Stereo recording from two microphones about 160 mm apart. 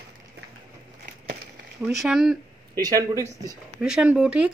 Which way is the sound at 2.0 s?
5° right (ahead or behind).